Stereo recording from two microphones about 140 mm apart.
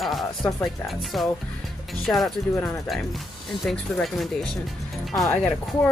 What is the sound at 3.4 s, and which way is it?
Speech, centre (ahead or behind).